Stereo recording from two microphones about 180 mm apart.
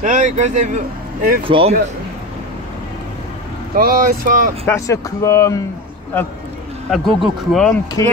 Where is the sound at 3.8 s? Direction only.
55° right (ahead or behind).